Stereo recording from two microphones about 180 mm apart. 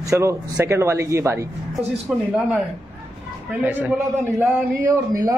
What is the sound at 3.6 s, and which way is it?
A man's voice, 10° right (ahead or behind).